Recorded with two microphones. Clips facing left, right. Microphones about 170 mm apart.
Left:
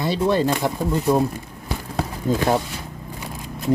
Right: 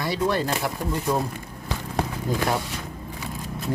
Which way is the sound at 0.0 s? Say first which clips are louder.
Left 5 dB; 20° left (ahead or behind).